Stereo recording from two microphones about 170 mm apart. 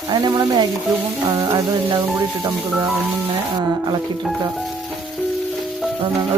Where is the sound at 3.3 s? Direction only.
25° right (ahead or behind).